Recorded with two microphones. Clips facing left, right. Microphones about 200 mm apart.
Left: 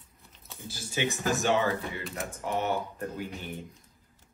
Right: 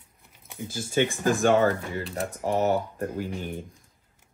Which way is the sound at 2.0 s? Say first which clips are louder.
Right 6 dB; 35° right (ahead or behind).